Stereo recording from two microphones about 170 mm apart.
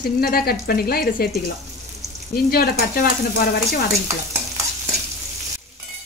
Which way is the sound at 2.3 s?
60° left (ahead or behind).